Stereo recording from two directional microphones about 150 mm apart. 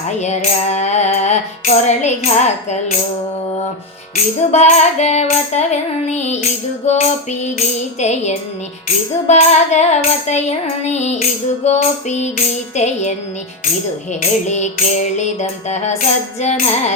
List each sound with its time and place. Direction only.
0.2 s music: 50° left (ahead or behind)
4.1 s music: 45° left (ahead or behind)